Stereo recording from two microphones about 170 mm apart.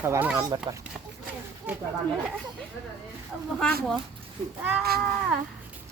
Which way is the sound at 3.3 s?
Centre (ahead or behind).